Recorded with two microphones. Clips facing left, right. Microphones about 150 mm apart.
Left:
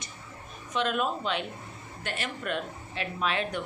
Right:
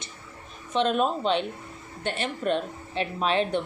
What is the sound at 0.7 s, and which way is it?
Speech, 30° right (ahead or behind).